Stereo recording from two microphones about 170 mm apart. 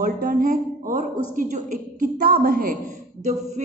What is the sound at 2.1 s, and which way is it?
Speech, 65° right (ahead or behind).